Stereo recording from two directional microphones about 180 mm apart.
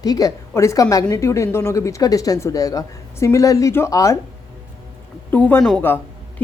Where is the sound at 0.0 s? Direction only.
20° left (ahead or behind).